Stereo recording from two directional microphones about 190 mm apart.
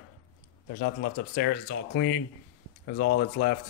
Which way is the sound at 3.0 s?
50° left (ahead or behind).